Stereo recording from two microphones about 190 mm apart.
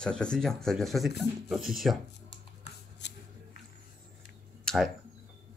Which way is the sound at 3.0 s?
65° left (ahead or behind).